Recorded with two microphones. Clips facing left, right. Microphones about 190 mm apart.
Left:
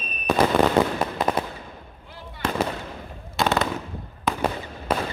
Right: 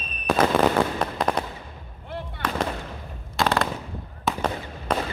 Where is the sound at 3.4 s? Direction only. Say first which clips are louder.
Left 1 dB; centre (ahead or behind).